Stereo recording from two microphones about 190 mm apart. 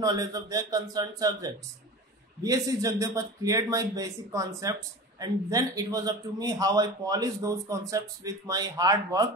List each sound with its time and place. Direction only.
0.0 s a man's voice: 20° right (ahead or behind)